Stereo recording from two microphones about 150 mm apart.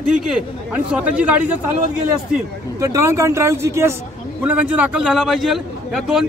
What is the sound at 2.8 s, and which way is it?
A man's voice, 20° right (ahead or behind).